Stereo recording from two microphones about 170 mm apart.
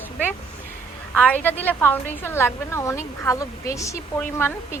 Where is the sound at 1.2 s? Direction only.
10° left (ahead or behind).